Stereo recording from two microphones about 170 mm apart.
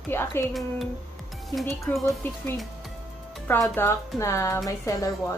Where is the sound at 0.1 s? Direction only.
15° left (ahead or behind).